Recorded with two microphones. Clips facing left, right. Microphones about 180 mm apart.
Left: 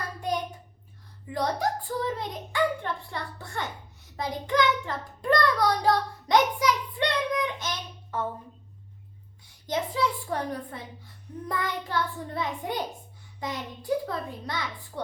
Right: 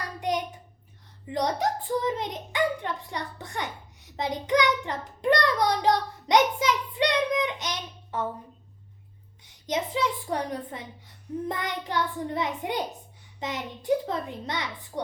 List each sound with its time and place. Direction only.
0.2 s hands: 20° right (ahead or behind)
1.3 s a child's voice: 20° right (ahead or behind)
9.4 s a woman's voice: 20° right (ahead or behind)